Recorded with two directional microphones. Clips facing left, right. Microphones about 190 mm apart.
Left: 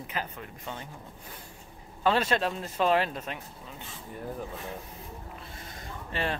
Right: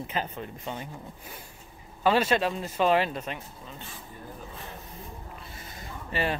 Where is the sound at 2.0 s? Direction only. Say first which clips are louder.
Right 2 dB; 5° right (ahead or behind).